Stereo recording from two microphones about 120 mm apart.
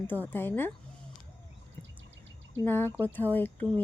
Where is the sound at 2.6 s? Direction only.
15° left (ahead or behind).